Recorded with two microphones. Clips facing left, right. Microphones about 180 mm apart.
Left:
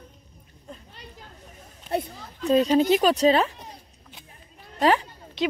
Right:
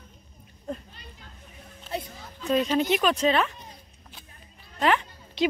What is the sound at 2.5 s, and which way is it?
Speech, 35° left (ahead or behind).